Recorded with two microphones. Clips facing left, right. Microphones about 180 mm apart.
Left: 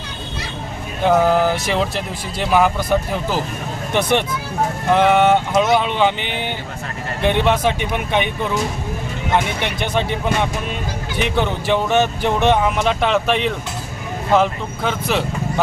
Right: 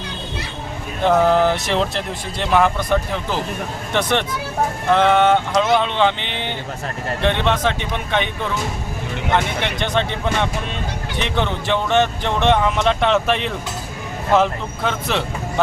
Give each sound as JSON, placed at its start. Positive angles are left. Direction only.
{"t": 1.0, "sound": "speech", "side_deg": 5}
{"t": 9.8, "sound": "speech", "side_deg": 10}
{"t": 11.2, "sound": "speech", "side_deg": 10}